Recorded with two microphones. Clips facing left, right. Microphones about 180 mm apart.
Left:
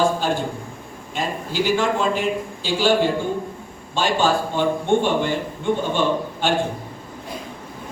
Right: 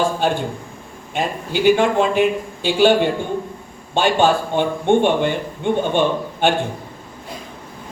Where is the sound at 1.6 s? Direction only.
60° right (ahead or behind).